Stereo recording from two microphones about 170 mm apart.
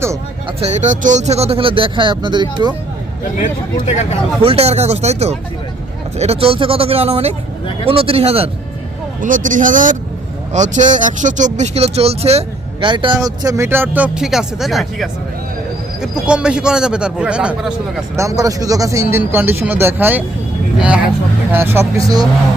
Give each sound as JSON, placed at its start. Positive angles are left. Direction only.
{"t": 0.4, "sound": "speech", "side_deg": -40}
{"t": 3.3, "sound": "speech", "side_deg": 45}
{"t": 4.4, "sound": "speech", "side_deg": -35}
{"t": 9.2, "sound": "a man's voice", "side_deg": -50}
{"t": 18.2, "sound": "a man's voice", "side_deg": -20}